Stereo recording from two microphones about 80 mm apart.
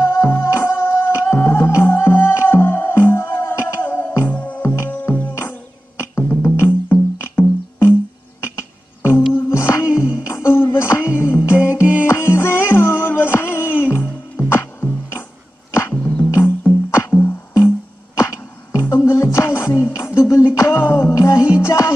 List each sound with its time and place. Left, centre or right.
0.0 s music: left
11.8 s music: centre
12.1 s music: left
16.3 s music: left
18.1 s music: left